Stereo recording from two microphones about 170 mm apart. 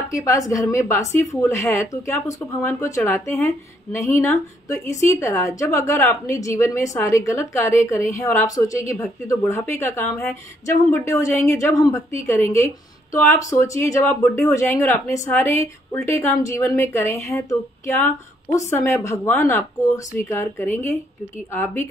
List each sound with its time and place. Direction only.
0.1 s a woman's voice: 20° left (ahead or behind)